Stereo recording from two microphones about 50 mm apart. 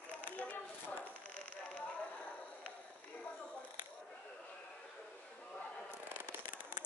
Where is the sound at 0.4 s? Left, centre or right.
Left.